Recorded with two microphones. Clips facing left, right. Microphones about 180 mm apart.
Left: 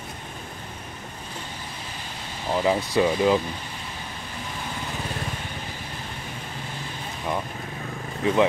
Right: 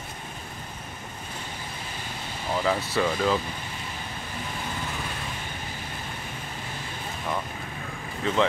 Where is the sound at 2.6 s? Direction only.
15° left (ahead or behind).